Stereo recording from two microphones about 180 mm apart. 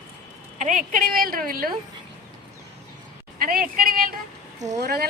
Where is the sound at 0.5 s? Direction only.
45° right (ahead or behind).